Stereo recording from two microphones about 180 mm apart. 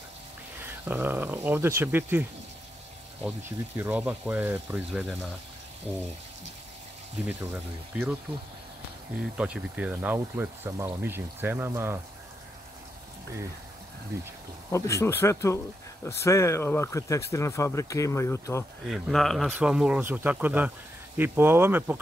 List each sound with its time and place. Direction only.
0.6 s speech: 10° right (ahead or behind)
3.3 s speech: 10° right (ahead or behind)
7.2 s speech: 10° right (ahead or behind)
9.2 s speech: 5° right (ahead or behind)
14.7 s speech: 15° left (ahead or behind)
18.9 s speech: centre (ahead or behind)